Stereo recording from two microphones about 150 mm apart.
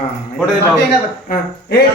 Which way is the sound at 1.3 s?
90° left.